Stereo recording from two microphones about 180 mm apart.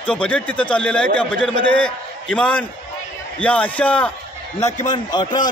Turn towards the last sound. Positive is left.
turn(degrees=25)  # may be behind; listen again after turning